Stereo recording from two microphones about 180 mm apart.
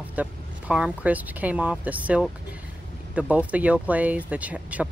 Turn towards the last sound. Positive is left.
turn(degrees=-5)  # may be behind; listen again after turning